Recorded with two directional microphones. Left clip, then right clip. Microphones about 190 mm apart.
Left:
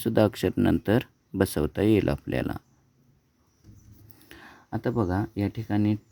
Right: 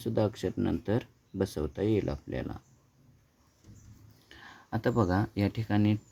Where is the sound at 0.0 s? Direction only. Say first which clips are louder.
Left 7 dB; 50° left (ahead or behind).